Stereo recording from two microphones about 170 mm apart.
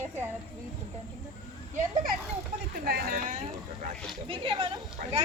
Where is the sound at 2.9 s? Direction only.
60° right (ahead or behind).